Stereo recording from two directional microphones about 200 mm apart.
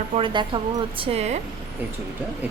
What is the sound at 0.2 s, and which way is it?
A woman's voice, 25° right (ahead or behind).